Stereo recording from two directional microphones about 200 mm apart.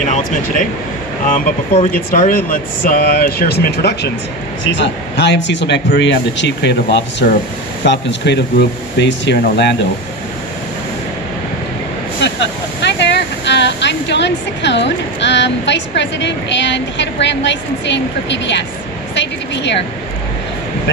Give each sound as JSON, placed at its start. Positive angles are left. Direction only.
{"t": 0.0, "sound": "speech", "side_deg": 35}
{"t": 2.9, "sound": "speech", "side_deg": 50}
{"t": 12.2, "sound": "speech", "side_deg": 60}